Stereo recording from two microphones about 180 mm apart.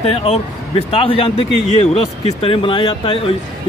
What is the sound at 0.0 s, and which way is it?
A man's voice, 35° left (ahead or behind).